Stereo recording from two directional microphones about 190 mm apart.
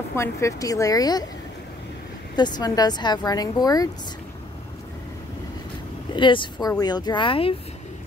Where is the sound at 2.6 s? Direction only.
20° left (ahead or behind).